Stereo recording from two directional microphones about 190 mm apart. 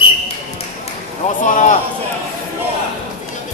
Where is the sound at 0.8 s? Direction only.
40° left (ahead or behind).